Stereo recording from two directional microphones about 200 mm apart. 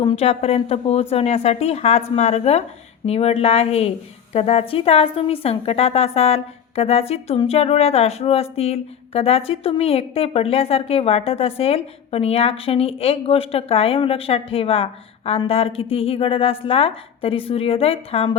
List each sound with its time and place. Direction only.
0.0 s a woman's voice: 25° left (ahead or behind)